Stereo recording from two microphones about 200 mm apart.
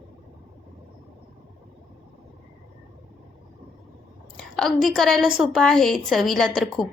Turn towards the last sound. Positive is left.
turn(degrees=0)  # may be behind; listen again after turning